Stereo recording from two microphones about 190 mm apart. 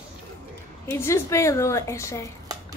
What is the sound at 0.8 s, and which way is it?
A woman's voice, 15° left (ahead or behind).